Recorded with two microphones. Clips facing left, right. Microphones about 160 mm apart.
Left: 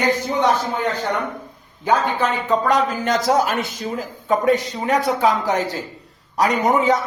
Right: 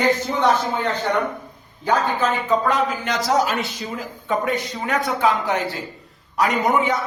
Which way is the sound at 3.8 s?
40° left (ahead or behind).